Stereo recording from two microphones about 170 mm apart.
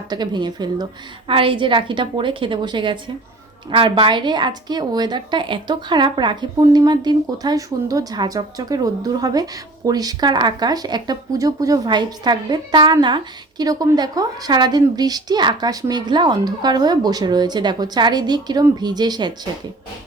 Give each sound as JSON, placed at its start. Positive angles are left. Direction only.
{"t": 0.1, "sound": "a woman's voice", "side_deg": -25}